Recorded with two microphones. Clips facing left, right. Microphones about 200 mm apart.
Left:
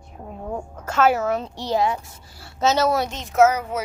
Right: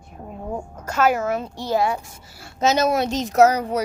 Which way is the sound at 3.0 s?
40° right (ahead or behind).